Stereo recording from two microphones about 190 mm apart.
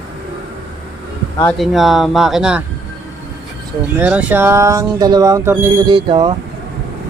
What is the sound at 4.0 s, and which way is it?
Speech, 10° right (ahead or behind).